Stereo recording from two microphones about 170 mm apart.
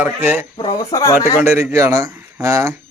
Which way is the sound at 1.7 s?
15° right (ahead or behind).